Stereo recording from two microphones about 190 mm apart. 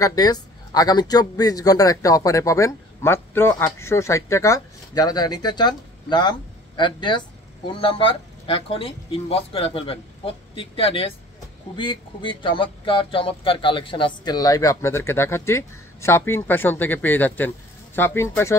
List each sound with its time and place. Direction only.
0.0 s speech: 20° left (ahead or behind)